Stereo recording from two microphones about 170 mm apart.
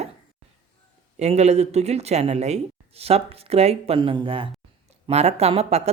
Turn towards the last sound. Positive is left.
turn(degrees=-35)  # may be behind; listen again after turning